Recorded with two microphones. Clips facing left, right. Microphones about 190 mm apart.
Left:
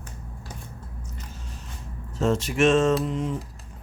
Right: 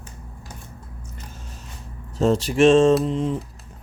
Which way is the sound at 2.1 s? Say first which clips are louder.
Right 4 dB; 35° right (ahead or behind).